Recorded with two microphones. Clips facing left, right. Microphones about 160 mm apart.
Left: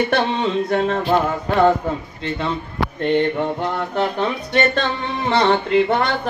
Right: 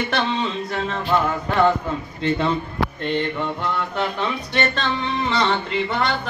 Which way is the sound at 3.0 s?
50° left (ahead or behind).